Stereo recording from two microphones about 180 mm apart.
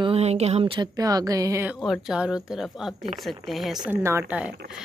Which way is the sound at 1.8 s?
Centre (ahead or behind).